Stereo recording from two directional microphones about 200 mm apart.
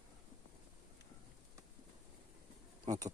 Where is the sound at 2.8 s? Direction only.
20° right (ahead or behind).